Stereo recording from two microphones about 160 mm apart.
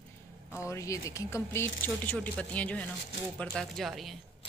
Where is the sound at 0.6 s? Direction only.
20° left (ahead or behind); by 4.2 s centre (ahead or behind).